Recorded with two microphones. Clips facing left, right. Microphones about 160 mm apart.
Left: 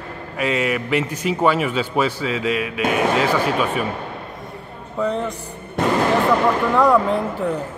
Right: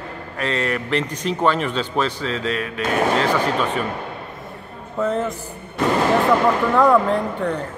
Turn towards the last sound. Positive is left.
turn(degrees=5)  # may be behind; listen again after turning